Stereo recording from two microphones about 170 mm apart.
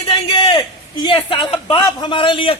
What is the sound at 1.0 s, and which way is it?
A man's voice, 30° left (ahead or behind).